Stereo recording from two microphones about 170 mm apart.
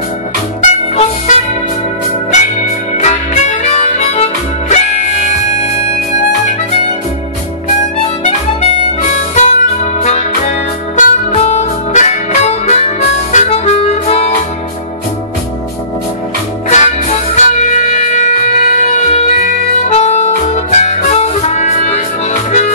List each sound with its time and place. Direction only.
0.6 s music: 45° left (ahead or behind)
2.6 s harmonica: 45° left (ahead or behind)
9.3 s music: 45° left (ahead or behind)
16.6 s music: 40° left (ahead or behind)
20.7 s harmonica: 40° left (ahead or behind)